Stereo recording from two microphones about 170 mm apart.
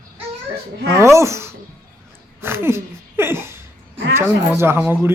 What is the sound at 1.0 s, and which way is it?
Speech, 15° right (ahead or behind).